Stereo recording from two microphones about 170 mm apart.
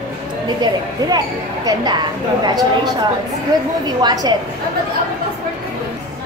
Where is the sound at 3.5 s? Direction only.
20° right (ahead or behind).